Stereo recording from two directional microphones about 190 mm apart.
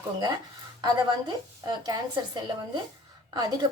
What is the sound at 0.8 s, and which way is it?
A woman's voice, 20° right (ahead or behind).